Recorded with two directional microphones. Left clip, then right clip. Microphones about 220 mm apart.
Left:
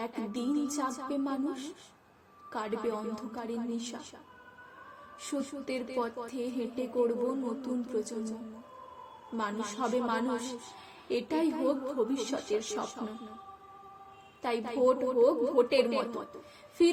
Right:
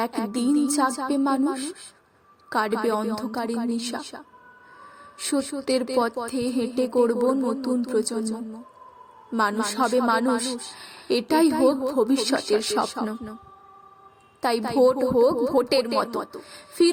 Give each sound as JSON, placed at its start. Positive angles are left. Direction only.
{"t": 0.0, "sound": "speech", "side_deg": -45}
{"t": 5.3, "sound": "speech", "side_deg": -45}
{"t": 9.3, "sound": "speech", "side_deg": -45}
{"t": 14.4, "sound": "speech", "side_deg": -50}